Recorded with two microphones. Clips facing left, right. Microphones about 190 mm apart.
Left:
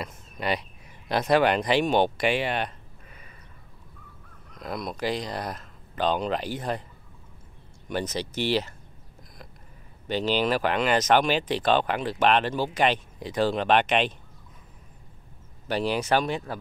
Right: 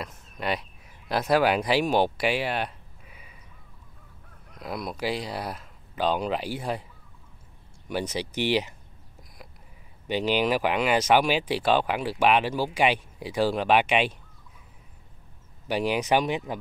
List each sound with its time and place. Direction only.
0.0 s speech: centre (ahead or behind)
4.6 s speech: 5° right (ahead or behind)
7.9 s speech: 10° right (ahead or behind)
10.0 s speech: 10° right (ahead or behind)
15.7 s speech: 15° right (ahead or behind)